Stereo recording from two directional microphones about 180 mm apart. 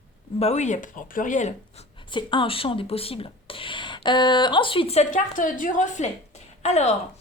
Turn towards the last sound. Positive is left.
turn(degrees=40)  # may be behind; listen again after turning